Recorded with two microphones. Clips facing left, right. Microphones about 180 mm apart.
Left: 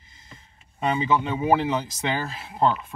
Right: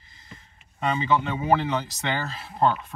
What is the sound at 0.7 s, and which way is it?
Speech, 15° left (ahead or behind).